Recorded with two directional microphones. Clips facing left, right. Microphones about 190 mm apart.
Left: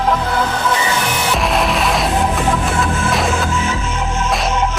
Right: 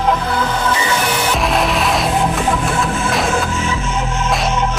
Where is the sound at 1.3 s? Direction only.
Centre (ahead or behind).